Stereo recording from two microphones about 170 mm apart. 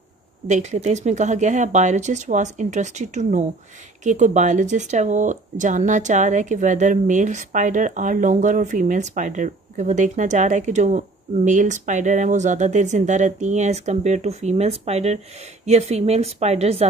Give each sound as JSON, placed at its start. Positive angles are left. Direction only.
{"t": 0.5, "sound": "a woman's voice", "side_deg": -45}